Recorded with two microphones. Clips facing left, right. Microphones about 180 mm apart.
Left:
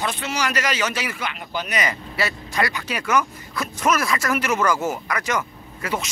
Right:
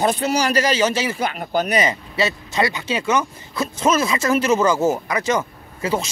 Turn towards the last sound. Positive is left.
turn(degrees=-30)  # may be behind; listen again after turning